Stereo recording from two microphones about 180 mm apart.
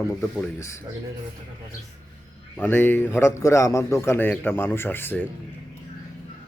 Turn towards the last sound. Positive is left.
turn(degrees=10)  # may be behind; listen again after turning